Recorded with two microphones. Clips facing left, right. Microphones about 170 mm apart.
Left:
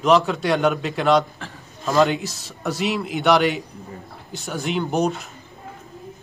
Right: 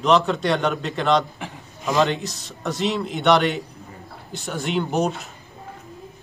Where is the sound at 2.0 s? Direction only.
Centre (ahead or behind).